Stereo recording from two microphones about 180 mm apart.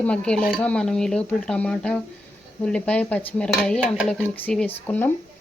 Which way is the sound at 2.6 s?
5° left (ahead or behind).